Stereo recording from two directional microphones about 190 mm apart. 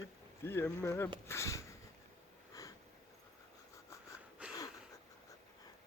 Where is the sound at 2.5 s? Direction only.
20° left (ahead or behind).